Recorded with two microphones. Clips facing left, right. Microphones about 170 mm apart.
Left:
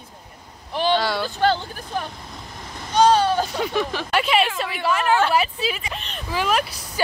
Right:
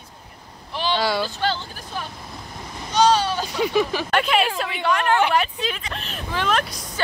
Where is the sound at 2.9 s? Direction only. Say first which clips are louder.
Left 2 dB; 55° left (ahead or behind).